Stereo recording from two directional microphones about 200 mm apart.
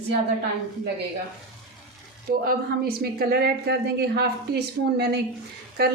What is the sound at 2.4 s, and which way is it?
Speech, 50° right (ahead or behind).